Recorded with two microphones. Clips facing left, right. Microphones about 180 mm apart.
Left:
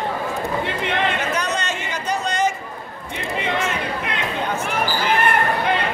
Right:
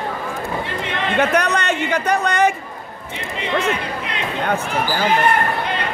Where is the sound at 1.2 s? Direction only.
65° right (ahead or behind).